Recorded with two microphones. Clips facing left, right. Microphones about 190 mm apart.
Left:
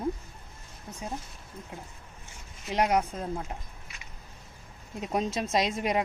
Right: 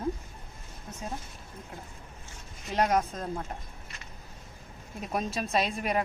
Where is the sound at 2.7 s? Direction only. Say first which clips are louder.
Left 1 dB; 15° left (ahead or behind).